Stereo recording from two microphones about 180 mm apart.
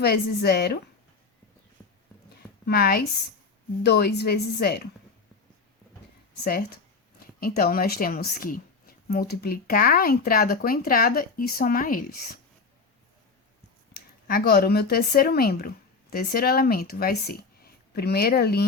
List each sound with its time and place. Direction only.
0.0 s a woman's voice: 60° left (ahead or behind)
1.8 s horse: 5° left (ahead or behind)
2.6 s a woman's voice: 60° left (ahead or behind)
6.4 s a woman's voice: 55° left (ahead or behind)
13.9 s speech: 55° left (ahead or behind)